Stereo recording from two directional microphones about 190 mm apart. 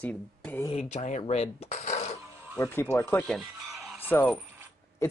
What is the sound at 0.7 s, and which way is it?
Coin, 35° left (ahead or behind).